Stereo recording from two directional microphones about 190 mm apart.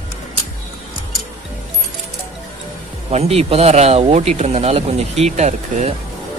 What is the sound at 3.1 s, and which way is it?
Speech, 35° right (ahead or behind).